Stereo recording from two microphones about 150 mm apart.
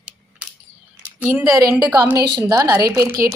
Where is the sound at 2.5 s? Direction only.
20° right (ahead or behind).